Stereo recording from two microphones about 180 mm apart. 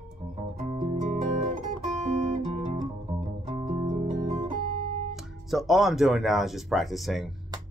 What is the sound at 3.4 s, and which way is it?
Music, 30° right (ahead or behind).